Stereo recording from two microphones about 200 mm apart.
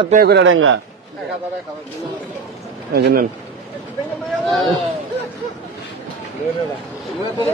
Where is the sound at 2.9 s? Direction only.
50° right (ahead or behind).